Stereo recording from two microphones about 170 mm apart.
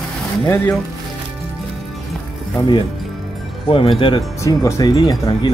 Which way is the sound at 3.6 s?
30° left (ahead or behind).